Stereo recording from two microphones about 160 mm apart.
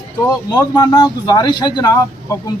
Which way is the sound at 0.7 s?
25° left (ahead or behind).